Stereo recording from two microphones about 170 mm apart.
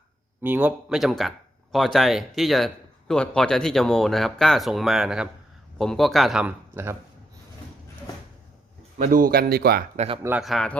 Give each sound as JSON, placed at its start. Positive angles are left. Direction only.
{"t": 0.4, "sound": "speech", "side_deg": -10}
{"t": 9.0, "sound": "speech", "side_deg": -55}
{"t": 10.4, "sound": "speech", "side_deg": 0}